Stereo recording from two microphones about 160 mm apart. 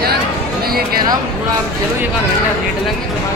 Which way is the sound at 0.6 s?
70° right (ahead or behind).